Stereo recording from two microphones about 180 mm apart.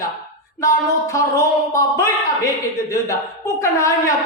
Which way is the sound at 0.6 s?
15° left (ahead or behind).